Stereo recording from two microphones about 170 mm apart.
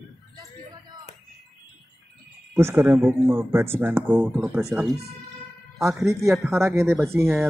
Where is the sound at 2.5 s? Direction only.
15° right (ahead or behind).